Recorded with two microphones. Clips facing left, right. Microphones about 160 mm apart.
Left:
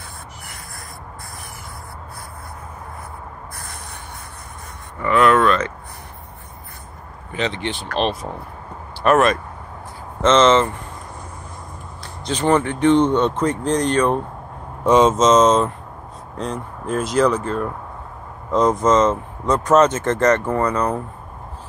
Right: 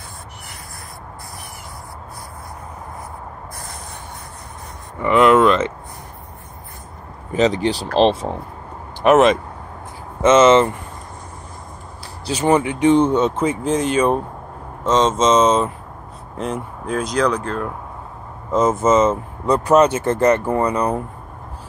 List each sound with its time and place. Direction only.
5.0 s a sound: 20° right (ahead or behind)
7.3 s speech: 40° right (ahead or behind); by 10.7 s 10° right (ahead or behind)
12.3 s speech: 10° right (ahead or behind)
14.8 s speech: 10° left (ahead or behind)
15.1 s speech: centre (ahead or behind)